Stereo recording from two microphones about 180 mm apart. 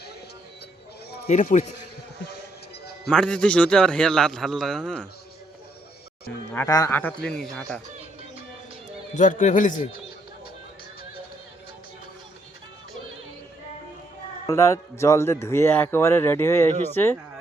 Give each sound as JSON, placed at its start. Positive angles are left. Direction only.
{"t": 1.3, "sound": "a man's voice", "side_deg": 40}
{"t": 3.1, "sound": "a man's voice", "side_deg": 5}
{"t": 6.5, "sound": "a man's voice", "side_deg": 15}
{"t": 9.1, "sound": "a man's voice", "side_deg": 45}
{"t": 14.4, "sound": "a man's voice", "side_deg": 15}